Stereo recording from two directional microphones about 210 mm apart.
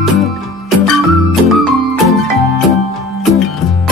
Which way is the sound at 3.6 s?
Centre (ahead or behind).